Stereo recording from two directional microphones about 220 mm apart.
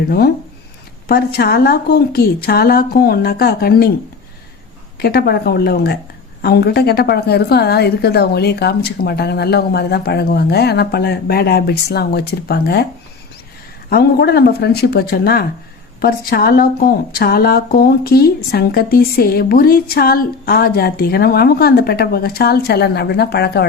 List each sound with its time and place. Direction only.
1.0 s a woman's voice: 45° left (ahead or behind)
4.9 s a woman's voice: 45° left (ahead or behind)
13.9 s a woman's voice: 45° left (ahead or behind)